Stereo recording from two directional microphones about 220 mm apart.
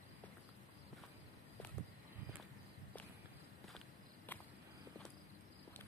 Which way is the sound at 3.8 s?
10° left (ahead or behind).